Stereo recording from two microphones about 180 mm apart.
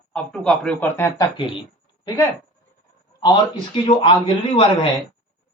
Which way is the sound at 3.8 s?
30° left (ahead or behind).